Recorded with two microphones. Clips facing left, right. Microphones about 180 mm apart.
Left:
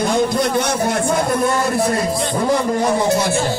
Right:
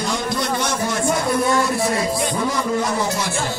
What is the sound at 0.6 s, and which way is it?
Speech, 60° left (ahead or behind).